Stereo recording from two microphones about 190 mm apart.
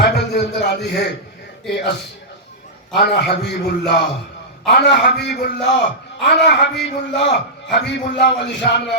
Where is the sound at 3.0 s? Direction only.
60° left (ahead or behind).